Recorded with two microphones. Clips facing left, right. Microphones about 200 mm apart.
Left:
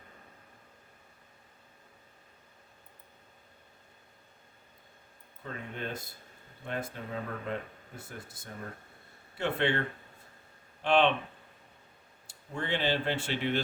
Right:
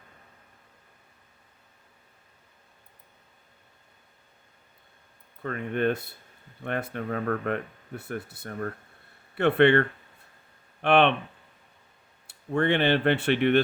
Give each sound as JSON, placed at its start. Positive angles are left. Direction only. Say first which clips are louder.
{"t": 5.4, "sound": "speech", "louder": "right 12 dB", "side_deg": -65}
{"t": 10.8, "sound": "speech", "louder": "right 4 dB", "side_deg": -65}
{"t": 12.3, "sound": "speech", "louder": "right 10 dB", "side_deg": -65}